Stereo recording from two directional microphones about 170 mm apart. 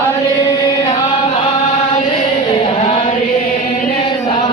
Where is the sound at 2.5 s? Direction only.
35° left (ahead or behind).